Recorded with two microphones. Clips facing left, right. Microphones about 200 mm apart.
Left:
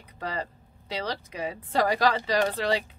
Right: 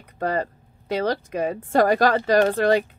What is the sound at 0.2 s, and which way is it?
Speech, 50° right (ahead or behind).